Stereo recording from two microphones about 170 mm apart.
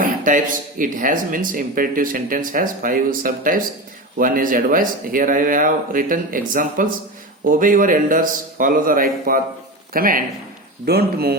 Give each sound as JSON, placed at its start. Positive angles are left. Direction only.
{"t": 0.0, "sound": "a man's voice", "side_deg": -50}
{"t": 10.8, "sound": "speech", "side_deg": -70}